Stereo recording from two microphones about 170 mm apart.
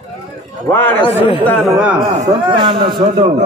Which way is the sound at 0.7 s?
10° left (ahead or behind).